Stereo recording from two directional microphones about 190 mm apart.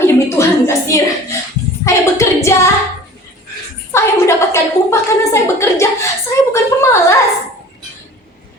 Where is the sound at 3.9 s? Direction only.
15° left (ahead or behind).